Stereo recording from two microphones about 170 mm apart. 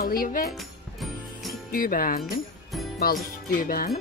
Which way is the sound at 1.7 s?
55° left (ahead or behind).